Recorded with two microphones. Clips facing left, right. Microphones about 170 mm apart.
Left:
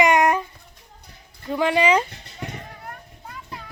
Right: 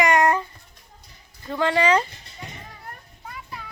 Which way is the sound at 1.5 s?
15° left (ahead or behind).